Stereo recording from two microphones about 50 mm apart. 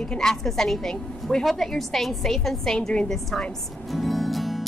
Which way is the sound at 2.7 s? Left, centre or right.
Centre.